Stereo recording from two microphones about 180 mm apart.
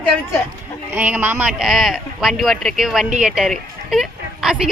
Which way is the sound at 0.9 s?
10° right (ahead or behind).